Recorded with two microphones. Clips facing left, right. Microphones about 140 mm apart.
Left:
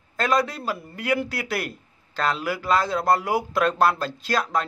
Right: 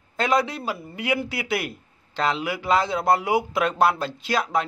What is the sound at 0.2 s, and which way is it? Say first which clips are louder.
A man's voice: even; 10° right (ahead or behind).